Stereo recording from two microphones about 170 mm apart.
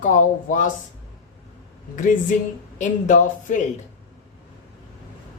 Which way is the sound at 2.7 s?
45° left (ahead or behind).